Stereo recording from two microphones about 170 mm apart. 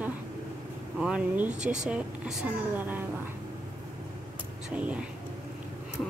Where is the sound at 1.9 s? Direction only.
10° right (ahead or behind).